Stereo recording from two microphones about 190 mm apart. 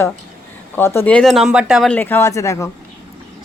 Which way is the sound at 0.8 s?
10° left (ahead or behind).